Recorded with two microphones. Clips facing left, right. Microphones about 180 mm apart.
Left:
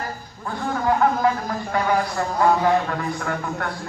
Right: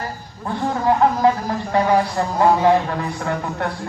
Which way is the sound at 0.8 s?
30° right (ahead or behind).